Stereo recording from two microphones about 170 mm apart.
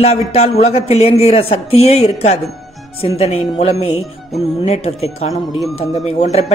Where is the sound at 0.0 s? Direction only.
35° left (ahead or behind).